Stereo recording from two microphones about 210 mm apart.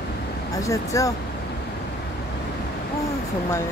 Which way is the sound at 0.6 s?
15° left (ahead or behind).